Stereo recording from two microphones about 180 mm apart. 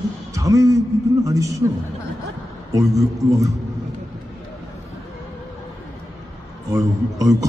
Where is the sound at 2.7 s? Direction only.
20° right (ahead or behind).